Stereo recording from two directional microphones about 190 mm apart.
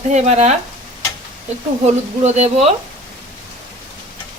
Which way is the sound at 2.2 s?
35° right (ahead or behind).